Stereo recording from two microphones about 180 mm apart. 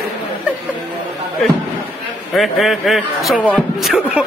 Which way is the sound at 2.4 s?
Centre (ahead or behind).